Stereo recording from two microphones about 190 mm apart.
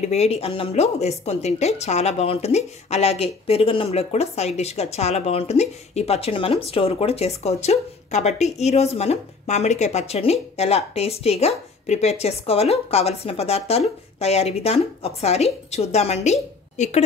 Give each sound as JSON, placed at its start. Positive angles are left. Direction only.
{"t": 0.1, "sound": "a woman's voice", "side_deg": 35}